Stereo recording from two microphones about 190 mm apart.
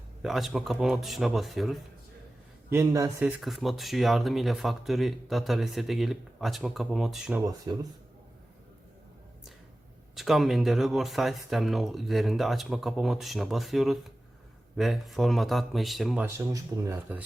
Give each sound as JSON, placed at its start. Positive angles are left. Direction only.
{"t": 0.2, "sound": "speech", "side_deg": 0}
{"t": 2.6, "sound": "speech", "side_deg": -15}
{"t": 7.4, "sound": "speech", "side_deg": -20}
{"t": 10.2, "sound": "speech", "side_deg": 0}
{"t": 16.2, "sound": "speech", "side_deg": -15}